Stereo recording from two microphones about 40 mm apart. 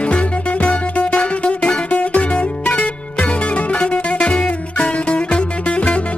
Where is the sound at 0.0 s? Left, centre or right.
Left.